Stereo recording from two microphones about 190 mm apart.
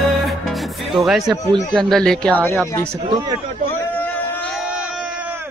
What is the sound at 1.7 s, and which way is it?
Speech, 5° left (ahead or behind).